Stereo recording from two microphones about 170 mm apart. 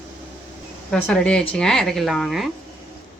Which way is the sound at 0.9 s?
5° left (ahead or behind).